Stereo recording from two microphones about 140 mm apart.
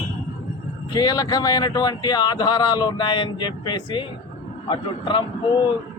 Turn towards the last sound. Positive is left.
turn(degrees=35)  # may be behind; listen again after turning